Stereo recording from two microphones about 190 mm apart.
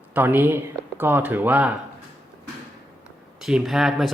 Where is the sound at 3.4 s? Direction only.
Centre (ahead or behind).